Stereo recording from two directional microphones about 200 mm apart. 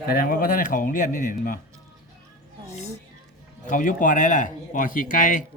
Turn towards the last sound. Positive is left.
turn(degrees=40)  # may be behind; listen again after turning